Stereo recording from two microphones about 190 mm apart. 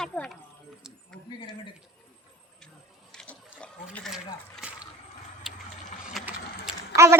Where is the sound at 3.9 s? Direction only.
Centre (ahead or behind).